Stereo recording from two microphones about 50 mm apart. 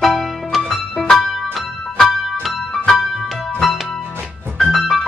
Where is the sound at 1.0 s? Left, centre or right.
Centre.